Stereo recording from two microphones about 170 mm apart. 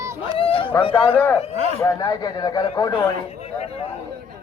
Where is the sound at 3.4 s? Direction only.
35° left (ahead or behind).